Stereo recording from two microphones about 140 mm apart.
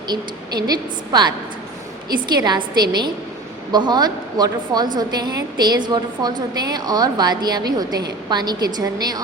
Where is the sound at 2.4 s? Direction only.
30° right (ahead or behind).